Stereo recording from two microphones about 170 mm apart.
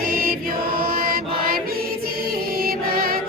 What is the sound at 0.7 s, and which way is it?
Chant, 60° right (ahead or behind).